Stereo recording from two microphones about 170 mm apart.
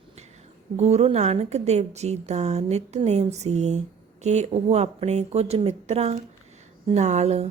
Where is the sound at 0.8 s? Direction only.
40° right (ahead or behind).